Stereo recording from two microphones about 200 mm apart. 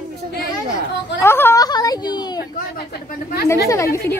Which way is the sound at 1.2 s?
10° left (ahead or behind).